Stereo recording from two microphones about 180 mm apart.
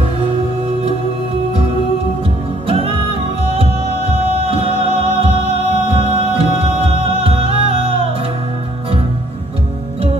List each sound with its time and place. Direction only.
2.7 s music: 30° right (ahead or behind)